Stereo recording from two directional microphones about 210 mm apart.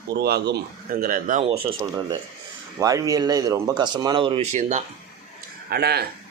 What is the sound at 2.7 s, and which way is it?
Speech, 15° right (ahead or behind).